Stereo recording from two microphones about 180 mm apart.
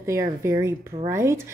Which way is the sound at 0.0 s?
15° right (ahead or behind).